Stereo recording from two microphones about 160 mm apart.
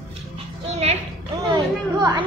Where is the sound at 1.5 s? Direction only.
25° right (ahead or behind).